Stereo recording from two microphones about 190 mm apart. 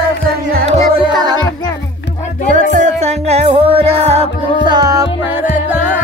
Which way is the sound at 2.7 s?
35° right (ahead or behind).